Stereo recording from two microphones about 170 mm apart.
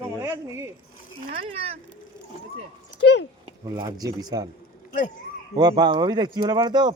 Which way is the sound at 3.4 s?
25° right (ahead or behind).